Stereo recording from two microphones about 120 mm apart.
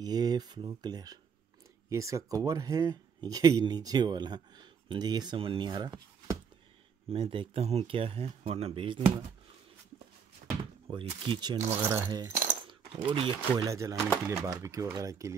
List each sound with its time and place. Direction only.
0.0 s speech: 35° right (ahead or behind)
7.1 s speech: 50° right (ahead or behind)
10.6 s speech: 45° right (ahead or behind)
11.8 s speech: 20° right (ahead or behind)
12.1 s a sound: 35° right (ahead or behind)
12.9 s speech: 50° right (ahead or behind)
13.6 s speech: 25° right (ahead or behind)